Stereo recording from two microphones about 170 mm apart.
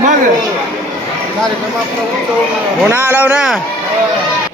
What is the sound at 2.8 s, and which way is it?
Speech, 10° right (ahead or behind).